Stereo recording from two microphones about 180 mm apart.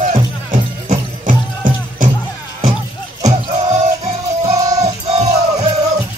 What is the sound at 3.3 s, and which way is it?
Music, 40° right (ahead or behind).